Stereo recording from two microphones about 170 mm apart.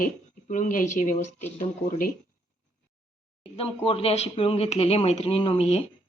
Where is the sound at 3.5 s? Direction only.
35° left (ahead or behind).